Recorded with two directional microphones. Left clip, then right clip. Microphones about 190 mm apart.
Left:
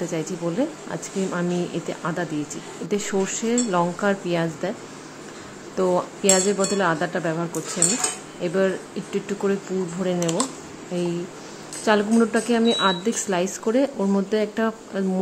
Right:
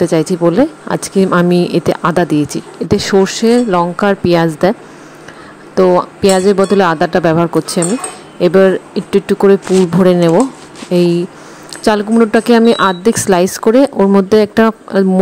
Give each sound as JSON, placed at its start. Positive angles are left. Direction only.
{"t": 0.0, "sound": "speech", "side_deg": -40}
{"t": 5.8, "sound": "speech", "side_deg": -40}
{"t": 10.9, "sound": "speech", "side_deg": -45}